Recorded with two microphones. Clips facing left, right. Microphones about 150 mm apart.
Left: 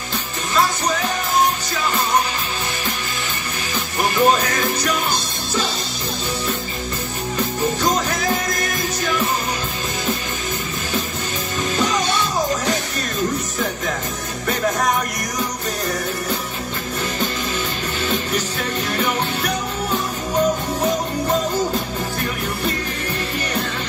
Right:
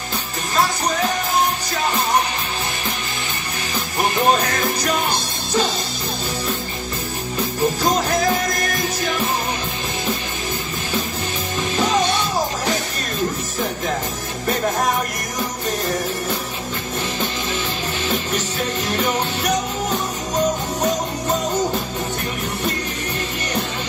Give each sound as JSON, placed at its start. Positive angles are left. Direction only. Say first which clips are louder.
{"t": 4.1, "sound": "music", "louder": "left 2 dB", "side_deg": -30}